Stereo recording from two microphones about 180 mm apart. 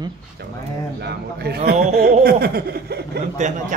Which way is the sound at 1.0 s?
60° right (ahead or behind).